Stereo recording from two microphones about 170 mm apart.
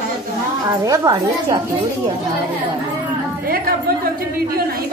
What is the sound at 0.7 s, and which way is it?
Speech, 20° right (ahead or behind).